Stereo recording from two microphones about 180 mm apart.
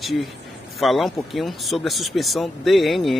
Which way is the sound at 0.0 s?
Centre (ahead or behind).